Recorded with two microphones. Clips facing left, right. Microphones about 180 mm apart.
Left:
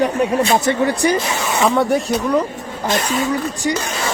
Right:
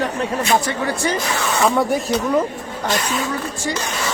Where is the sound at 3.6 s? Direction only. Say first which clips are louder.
Left 5 dB; 20° left (ahead or behind).